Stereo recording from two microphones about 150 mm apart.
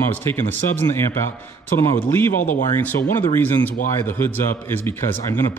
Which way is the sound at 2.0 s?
15° left (ahead or behind).